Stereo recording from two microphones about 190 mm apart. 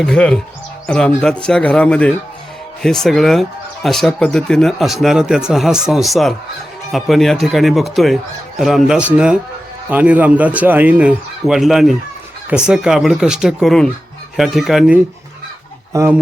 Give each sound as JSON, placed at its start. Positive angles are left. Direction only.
{"t": 0.0, "sound": "speech", "side_deg": 5}
{"t": 15.9, "sound": "speech", "side_deg": -15}